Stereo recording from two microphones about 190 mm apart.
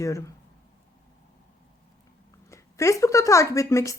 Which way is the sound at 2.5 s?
15° left (ahead or behind).